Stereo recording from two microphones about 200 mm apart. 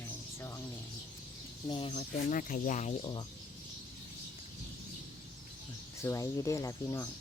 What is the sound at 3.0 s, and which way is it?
Speech, 20° left (ahead or behind).